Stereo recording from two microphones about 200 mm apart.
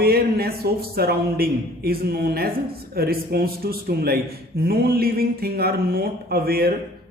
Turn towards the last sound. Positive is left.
turn(degrees=-50)  # may be behind; listen again after turning